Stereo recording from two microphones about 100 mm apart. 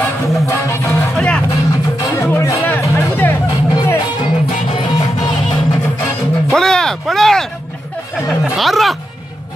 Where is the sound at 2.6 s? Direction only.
20° left (ahead or behind).